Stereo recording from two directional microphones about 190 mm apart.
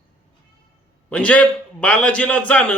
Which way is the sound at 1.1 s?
5° left (ahead or behind).